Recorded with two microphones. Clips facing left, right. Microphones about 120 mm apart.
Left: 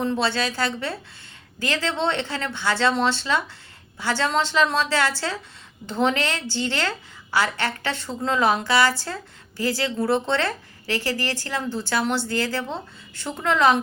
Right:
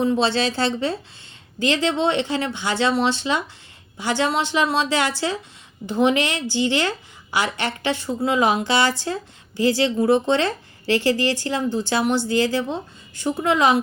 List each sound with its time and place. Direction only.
0.0 s a woman's voice: 15° right (ahead or behind)